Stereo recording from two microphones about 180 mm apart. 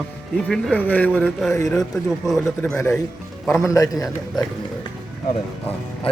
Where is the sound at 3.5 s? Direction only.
15° left (ahead or behind).